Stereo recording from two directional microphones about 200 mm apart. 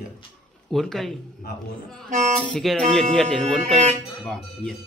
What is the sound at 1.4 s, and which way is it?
Speech, 50° left (ahead or behind).